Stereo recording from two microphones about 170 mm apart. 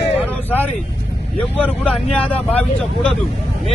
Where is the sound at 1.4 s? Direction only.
10° left (ahead or behind).